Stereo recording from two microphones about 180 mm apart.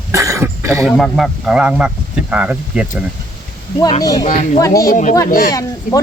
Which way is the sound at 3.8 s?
20° left (ahead or behind).